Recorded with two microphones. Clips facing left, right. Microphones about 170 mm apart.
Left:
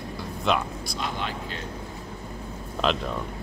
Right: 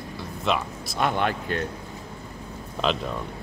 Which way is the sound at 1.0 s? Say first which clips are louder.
Right 8 dB; 55° right (ahead or behind).